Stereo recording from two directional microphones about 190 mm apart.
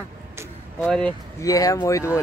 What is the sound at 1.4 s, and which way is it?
Speech, 20° left (ahead or behind).